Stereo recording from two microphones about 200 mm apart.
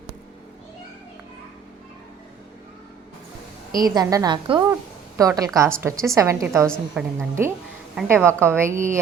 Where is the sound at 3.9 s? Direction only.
20° right (ahead or behind).